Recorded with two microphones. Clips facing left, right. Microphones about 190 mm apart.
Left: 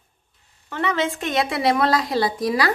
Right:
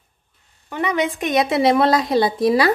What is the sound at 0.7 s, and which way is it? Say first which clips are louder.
A woman's voice: right 2 dB; 15° right (ahead or behind).